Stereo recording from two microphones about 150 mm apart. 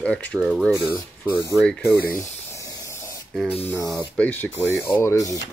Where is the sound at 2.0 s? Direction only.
20° left (ahead or behind).